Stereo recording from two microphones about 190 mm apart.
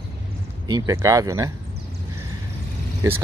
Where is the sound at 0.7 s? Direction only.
20° right (ahead or behind).